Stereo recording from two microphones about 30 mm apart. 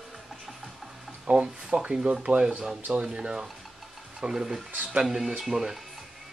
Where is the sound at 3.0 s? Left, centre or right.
Right.